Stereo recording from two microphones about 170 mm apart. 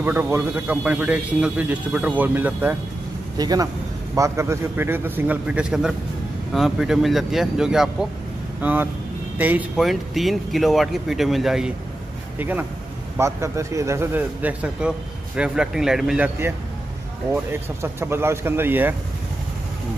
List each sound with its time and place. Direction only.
0.0 s a man's voice: 10° right (ahead or behind)
3.3 s a man's voice: 20° right (ahead or behind); by 16.3 s 5° right (ahead or behind)
17.3 s a man's voice: 15° right (ahead or behind)